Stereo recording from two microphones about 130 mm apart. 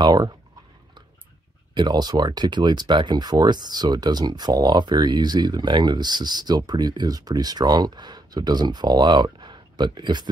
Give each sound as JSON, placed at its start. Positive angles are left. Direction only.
{"t": 0.0, "sound": "speech", "side_deg": -30}
{"t": 1.7, "sound": "speech", "side_deg": -35}